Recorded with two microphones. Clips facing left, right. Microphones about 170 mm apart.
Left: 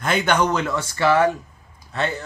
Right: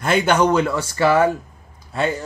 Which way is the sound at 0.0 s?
5° right (ahead or behind).